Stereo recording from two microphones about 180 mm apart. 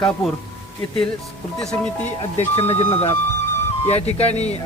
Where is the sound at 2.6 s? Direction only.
35° left (ahead or behind).